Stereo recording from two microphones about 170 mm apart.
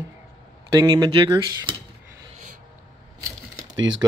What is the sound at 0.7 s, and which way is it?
Speech, 20° right (ahead or behind).